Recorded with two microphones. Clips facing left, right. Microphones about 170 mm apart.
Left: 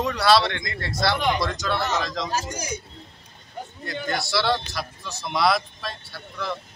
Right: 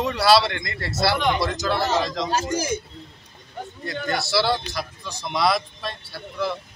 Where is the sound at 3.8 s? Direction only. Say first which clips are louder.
Right 2 dB; centre (ahead or behind).